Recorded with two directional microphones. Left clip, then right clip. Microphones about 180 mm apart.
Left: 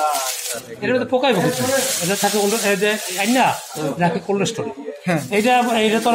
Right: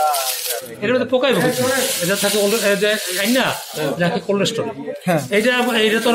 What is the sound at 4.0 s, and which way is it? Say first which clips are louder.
A man's voice: even; 35° left (ahead or behind).